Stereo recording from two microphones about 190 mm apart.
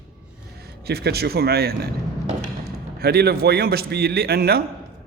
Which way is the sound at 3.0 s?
55° right (ahead or behind).